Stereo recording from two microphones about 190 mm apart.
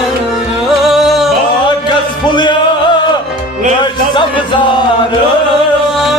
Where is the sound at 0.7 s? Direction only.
Centre (ahead or behind).